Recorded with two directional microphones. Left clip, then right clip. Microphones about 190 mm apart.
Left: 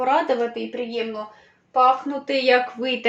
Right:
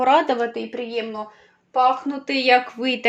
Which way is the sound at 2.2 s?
55° right (ahead or behind).